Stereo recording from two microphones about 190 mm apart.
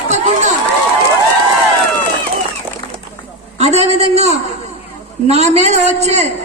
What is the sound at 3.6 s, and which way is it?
A man's voice, 35° right (ahead or behind).